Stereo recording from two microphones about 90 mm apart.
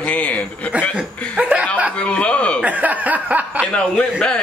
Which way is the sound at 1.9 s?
15° left (ahead or behind).